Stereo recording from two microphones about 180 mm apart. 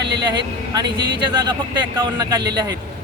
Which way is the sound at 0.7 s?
25° right (ahead or behind).